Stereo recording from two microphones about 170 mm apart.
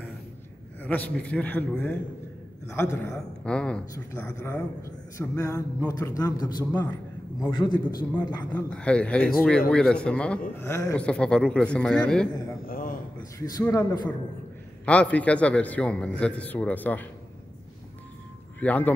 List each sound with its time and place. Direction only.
0.8 s a man's voice: 10° left (ahead or behind); by 6.6 s 25° left (ahead or behind)
6.7 s a man's voice: 10° left (ahead or behind)
7.5 s a man's voice: 25° left (ahead or behind)
8.6 s a man's voice: 5° left (ahead or behind)
10.6 s a man's voice: 15° left (ahead or behind)
11.0 s speech: 5° left (ahead or behind)
12.6 s a sound: 55° left (ahead or behind)
13.4 s a man's voice: 20° left (ahead or behind)
14.9 s a man's voice: 10° left (ahead or behind)
18.6 s a man's voice: 10° left (ahead or behind)